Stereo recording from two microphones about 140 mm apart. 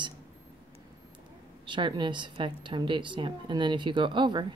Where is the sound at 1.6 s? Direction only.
35° right (ahead or behind).